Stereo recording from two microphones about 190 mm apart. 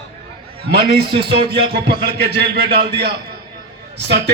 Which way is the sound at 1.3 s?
60° right (ahead or behind).